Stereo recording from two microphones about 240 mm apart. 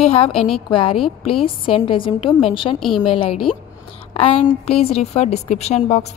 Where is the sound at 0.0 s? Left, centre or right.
Left.